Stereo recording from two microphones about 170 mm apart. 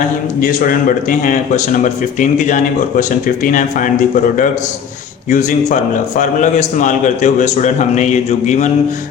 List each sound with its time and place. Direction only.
0.3 s a man's voice: 55° left (ahead or behind)
5.3 s a man's voice: 50° left (ahead or behind)